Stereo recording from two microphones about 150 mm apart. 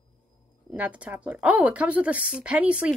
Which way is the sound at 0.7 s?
10° right (ahead or behind).